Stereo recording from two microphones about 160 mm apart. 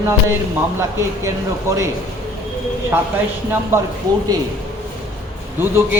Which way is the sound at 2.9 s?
15° right (ahead or behind).